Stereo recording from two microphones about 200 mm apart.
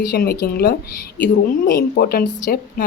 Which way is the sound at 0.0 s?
50° left (ahead or behind).